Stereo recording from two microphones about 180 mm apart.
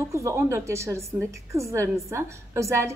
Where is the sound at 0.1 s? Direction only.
15° right (ahead or behind).